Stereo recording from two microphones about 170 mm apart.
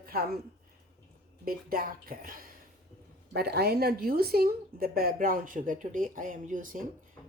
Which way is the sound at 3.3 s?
70° right (ahead or behind).